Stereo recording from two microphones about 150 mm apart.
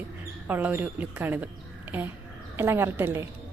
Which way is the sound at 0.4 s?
10° right (ahead or behind).